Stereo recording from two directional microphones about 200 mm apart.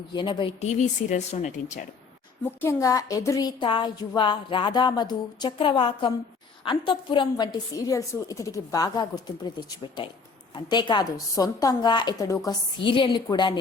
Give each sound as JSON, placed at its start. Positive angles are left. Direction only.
{"t": 0.1, "sound": "speech", "side_deg": 20}
{"t": 2.6, "sound": "speech", "side_deg": 15}